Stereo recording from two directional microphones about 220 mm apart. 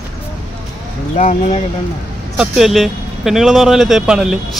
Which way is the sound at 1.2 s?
35° left (ahead or behind).